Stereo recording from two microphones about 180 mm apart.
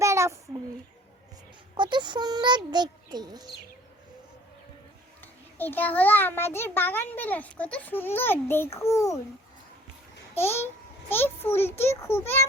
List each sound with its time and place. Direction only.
0.0 s child singing: 15° right (ahead or behind)
1.7 s a child's voice: 25° right (ahead or behind)
5.2 s a child's voice: 10° left (ahead or behind)
10.3 s a child's voice: 15° left (ahead or behind)